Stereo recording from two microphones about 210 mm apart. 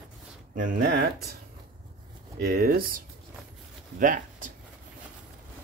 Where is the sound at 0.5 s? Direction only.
40° right (ahead or behind).